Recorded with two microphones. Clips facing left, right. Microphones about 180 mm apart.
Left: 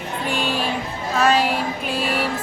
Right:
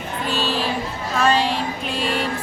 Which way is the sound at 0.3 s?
15° left (ahead or behind).